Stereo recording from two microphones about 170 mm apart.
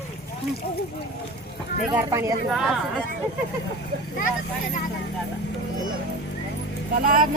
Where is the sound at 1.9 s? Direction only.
15° right (ahead or behind).